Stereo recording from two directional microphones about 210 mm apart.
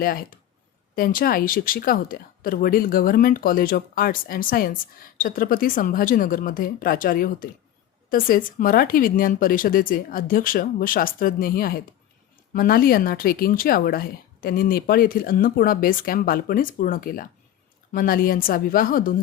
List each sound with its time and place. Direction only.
0.0 s speech: 45° left (ahead or behind)